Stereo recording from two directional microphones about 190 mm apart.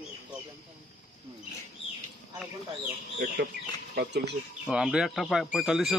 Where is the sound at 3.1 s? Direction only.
55° right (ahead or behind).